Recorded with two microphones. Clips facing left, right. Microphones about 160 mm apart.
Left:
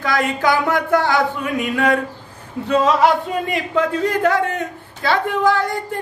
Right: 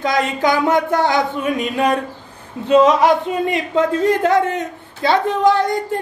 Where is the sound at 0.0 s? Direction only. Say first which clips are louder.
Right 1 dB; 20° right (ahead or behind).